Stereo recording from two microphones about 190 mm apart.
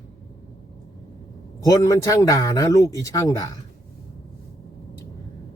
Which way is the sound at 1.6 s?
20° left (ahead or behind).